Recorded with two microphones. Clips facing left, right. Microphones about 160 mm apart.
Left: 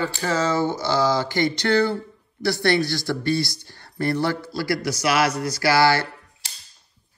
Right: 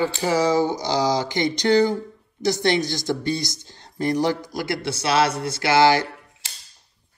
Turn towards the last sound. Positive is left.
turn(degrees=-20)  # may be behind; listen again after turning